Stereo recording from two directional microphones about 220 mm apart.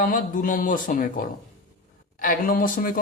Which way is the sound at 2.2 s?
40° left (ahead or behind).